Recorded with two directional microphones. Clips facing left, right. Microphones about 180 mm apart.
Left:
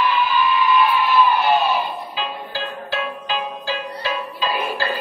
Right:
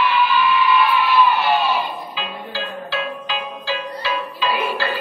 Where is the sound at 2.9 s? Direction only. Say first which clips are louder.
Left 1 dB; 45° left (ahead or behind).